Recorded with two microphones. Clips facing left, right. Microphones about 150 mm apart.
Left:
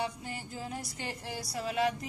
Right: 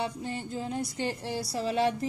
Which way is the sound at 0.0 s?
25° right (ahead or behind).